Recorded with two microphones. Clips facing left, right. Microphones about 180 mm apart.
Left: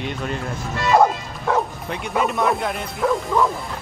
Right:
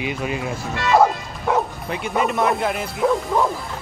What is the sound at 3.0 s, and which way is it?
Speech, 20° right (ahead or behind).